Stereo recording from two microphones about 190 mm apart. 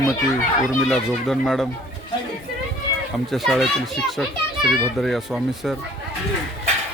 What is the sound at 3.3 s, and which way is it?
A child's voice, centre (ahead or behind).